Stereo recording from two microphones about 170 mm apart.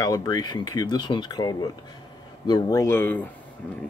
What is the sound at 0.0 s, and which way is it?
Speech, 25° left (ahead or behind).